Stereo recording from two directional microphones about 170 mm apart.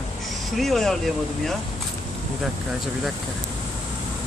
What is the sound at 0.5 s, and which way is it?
Speech, centre (ahead or behind).